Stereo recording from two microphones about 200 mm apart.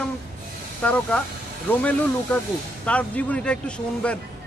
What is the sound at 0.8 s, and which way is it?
A man's voice, 5° left (ahead or behind).